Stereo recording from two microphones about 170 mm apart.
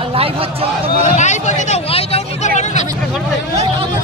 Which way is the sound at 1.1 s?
45° left (ahead or behind).